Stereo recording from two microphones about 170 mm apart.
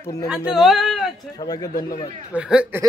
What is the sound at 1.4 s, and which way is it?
Speech, 20° left (ahead or behind).